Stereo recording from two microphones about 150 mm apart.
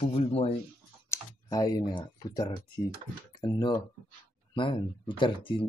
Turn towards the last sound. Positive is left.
turn(degrees=35)  # may be behind; listen again after turning